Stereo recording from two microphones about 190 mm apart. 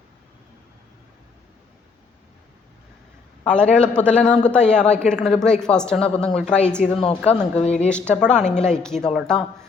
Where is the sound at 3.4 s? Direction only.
5° left (ahead or behind).